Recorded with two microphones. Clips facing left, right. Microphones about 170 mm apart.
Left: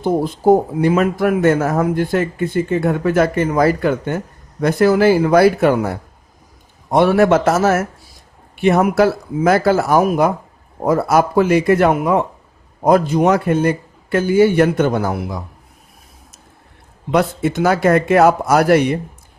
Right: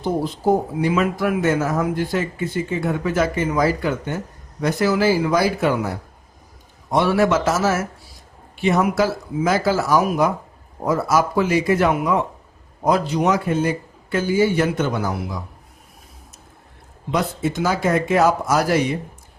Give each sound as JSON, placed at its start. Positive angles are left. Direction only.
{"t": 0.0, "sound": "speech", "side_deg": 50}
{"t": 17.1, "sound": "speech", "side_deg": 65}